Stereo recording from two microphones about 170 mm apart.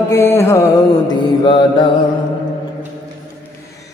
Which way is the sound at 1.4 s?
30° left (ahead or behind).